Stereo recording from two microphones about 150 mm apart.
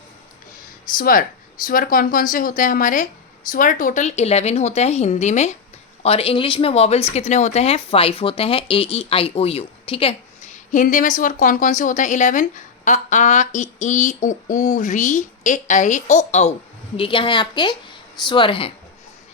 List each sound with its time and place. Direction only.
0.9 s speech: 70° left (ahead or behind); by 10.2 s 40° left (ahead or behind)
10.5 s a woman's voice: 60° left (ahead or behind)
17.0 s speech: 35° left (ahead or behind)